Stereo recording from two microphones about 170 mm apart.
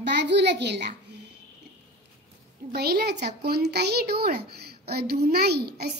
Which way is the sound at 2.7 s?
65° right (ahead or behind).